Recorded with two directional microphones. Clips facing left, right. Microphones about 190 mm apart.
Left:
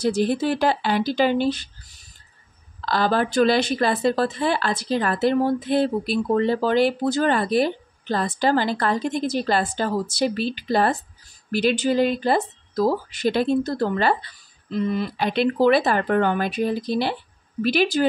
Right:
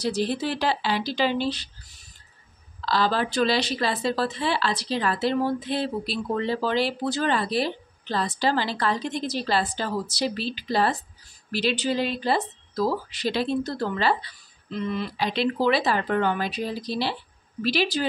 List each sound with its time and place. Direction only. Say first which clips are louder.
0.0 s a woman's voice: left 5 dB; 50° left (ahead or behind)
2.8 s a woman's voice: left 3 dB; 50° left (ahead or behind)